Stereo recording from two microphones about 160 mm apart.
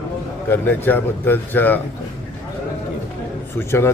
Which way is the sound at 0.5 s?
10° left (ahead or behind).